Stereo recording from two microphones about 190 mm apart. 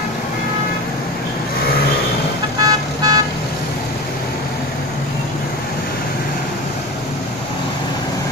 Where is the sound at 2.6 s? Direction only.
20° right (ahead or behind).